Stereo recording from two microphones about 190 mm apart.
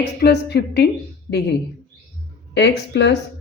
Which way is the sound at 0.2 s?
60° left (ahead or behind).